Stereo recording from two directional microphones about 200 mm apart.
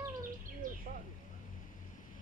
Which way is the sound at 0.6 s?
45° right (ahead or behind).